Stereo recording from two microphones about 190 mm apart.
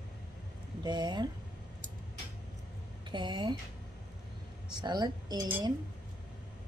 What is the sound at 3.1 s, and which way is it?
Speech, 25° right (ahead or behind).